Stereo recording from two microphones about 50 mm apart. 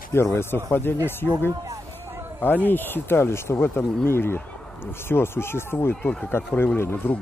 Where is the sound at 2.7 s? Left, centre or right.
Left.